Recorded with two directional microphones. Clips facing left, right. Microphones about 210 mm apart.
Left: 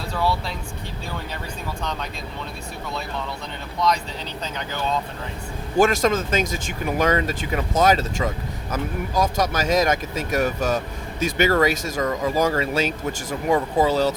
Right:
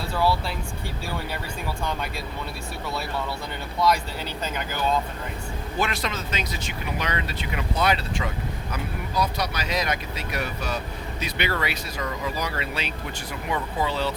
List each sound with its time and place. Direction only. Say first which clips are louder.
0.1 s speech: even; 5° right (ahead or behind)
1.8 s speech: right 1 dB; 10° right (ahead or behind)
3.8 s speech: even; 5° right (ahead or behind)
5.7 s speech: left 10 dB; 45° left (ahead or behind)